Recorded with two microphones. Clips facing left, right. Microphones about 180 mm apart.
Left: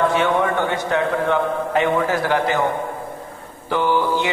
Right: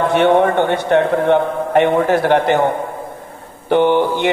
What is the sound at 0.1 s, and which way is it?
A man's voice, 60° right (ahead or behind).